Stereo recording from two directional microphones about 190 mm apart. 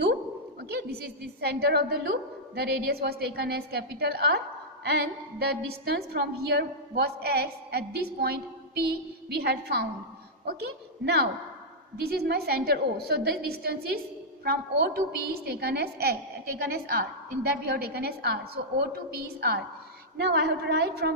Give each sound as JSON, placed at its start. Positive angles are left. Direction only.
{"t": 0.6, "sound": "a woman's voice", "side_deg": -55}